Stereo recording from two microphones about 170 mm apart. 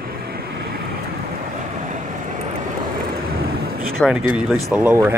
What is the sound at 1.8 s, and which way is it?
Vehicle, 45° right (ahead or behind).